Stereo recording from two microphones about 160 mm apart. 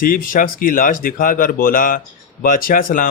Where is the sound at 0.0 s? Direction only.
60° left (ahead or behind).